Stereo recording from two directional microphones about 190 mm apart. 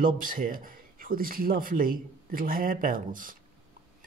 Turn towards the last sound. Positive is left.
turn(degrees=-45)  # may be behind; listen again after turning